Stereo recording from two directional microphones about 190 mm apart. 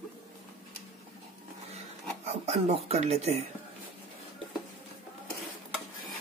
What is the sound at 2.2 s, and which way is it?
Speech, 35° right (ahead or behind).